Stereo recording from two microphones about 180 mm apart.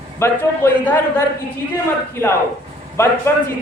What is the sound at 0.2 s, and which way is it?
Speech, 15° left (ahead or behind).